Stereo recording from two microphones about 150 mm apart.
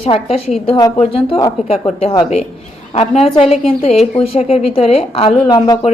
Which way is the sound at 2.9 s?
45° left (ahead or behind).